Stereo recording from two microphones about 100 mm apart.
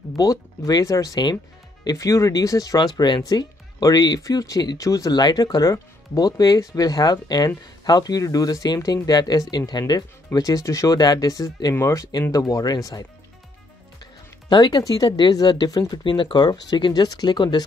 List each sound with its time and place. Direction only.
0.1 s speech: 30° left (ahead or behind)
12.1 s speech: 40° left (ahead or behind)
14.5 s speech: 40° left (ahead or behind)
16.0 s speech: 55° left (ahead or behind)